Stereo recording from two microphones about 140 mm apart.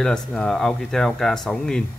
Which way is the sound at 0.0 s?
5° left (ahead or behind).